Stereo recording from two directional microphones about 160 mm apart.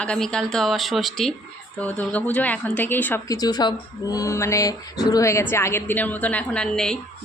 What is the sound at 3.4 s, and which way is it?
A woman's voice, 25° left (ahead or behind).